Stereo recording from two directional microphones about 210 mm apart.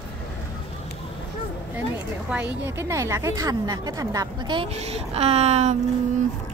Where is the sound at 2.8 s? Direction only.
15° right (ahead or behind).